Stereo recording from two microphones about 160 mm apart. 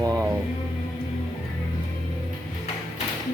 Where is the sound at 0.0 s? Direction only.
25° right (ahead or behind).